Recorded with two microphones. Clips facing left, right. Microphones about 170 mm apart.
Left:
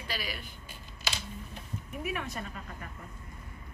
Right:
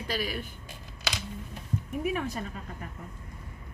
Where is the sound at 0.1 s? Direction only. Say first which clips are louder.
Right 6 dB; 45° right (ahead or behind).